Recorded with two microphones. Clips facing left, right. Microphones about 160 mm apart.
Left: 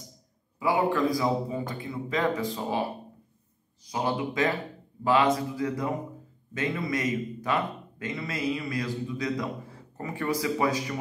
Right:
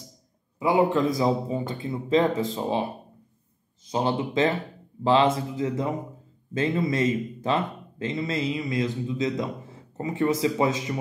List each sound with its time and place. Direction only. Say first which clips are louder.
0.6 s speech: right 3 dB; 20° right (ahead or behind)